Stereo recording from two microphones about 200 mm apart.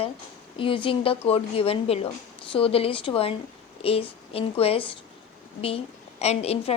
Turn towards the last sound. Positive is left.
turn(degrees=30)  # may be behind; listen again after turning